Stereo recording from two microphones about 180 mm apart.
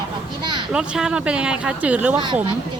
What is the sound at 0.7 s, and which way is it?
Speech, 5° right (ahead or behind).